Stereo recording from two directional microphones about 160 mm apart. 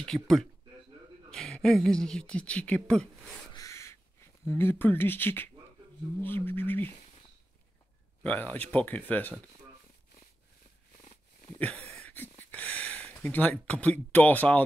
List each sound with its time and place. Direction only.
0.0 s speech: 5° left (ahead or behind)
3.5 s crow: 20° left (ahead or behind)
4.5 s speech: 15° left (ahead or behind)
8.2 s speech: 10° left (ahead or behind)
11.5 s a sound: 10° left (ahead or behind)
14.1 s speech: 10° left (ahead or behind)